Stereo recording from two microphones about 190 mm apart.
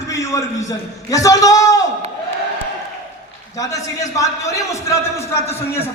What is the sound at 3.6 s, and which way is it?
A man's voice, 15° left (ahead or behind).